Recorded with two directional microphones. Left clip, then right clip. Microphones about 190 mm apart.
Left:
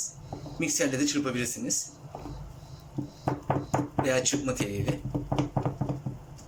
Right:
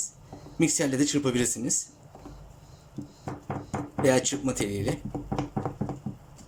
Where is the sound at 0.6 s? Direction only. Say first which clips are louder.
Right 2 dB; 25° right (ahead or behind).